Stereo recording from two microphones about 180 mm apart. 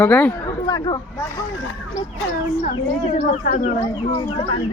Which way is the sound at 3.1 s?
55° left (ahead or behind).